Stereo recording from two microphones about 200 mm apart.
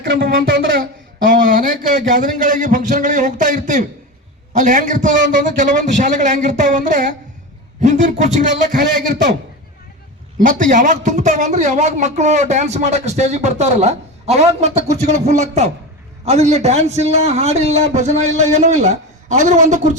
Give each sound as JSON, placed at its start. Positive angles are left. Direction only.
{"t": 0.1, "sound": "speech", "side_deg": -60}
{"t": 1.9, "sound": "a man's voice", "side_deg": -40}
{"t": 8.7, "sound": "speech", "side_deg": -55}
{"t": 10.4, "sound": "a man's voice", "side_deg": -40}